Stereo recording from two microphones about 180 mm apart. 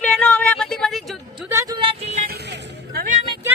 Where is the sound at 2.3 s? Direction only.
70° right (ahead or behind).